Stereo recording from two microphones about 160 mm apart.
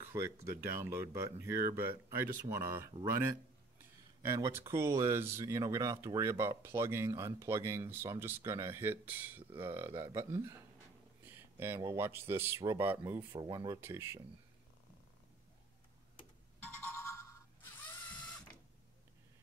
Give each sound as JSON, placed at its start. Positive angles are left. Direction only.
{"t": 0.1, "sound": "speech", "side_deg": -15}
{"t": 4.2, "sound": "speech", "side_deg": -15}
{"t": 16.5, "sound": "ringtone", "side_deg": 10}